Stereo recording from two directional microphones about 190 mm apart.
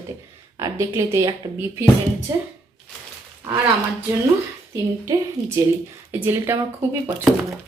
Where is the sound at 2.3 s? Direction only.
15° right (ahead or behind).